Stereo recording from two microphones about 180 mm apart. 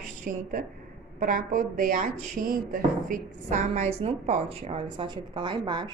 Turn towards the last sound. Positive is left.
turn(degrees=-25)  # may be behind; listen again after turning